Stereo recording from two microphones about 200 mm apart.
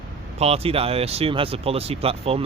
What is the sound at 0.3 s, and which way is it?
Speech, 30° right (ahead or behind).